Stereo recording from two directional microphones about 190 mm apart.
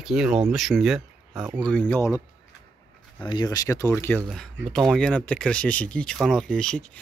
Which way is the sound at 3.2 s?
25° left (ahead or behind).